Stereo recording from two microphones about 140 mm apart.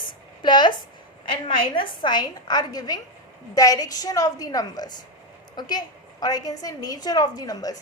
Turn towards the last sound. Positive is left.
turn(degrees=25)  # may be behind; listen again after turning